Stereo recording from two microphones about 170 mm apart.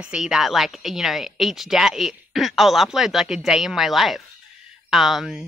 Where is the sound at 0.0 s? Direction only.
5° right (ahead or behind).